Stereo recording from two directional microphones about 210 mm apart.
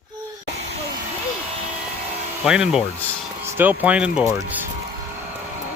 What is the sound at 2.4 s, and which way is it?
A man's voice, 5° right (ahead or behind).